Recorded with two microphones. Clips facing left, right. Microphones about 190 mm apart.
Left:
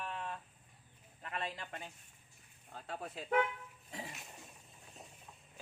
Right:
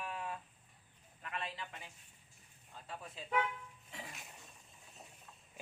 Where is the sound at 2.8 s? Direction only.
65° left (ahead or behind).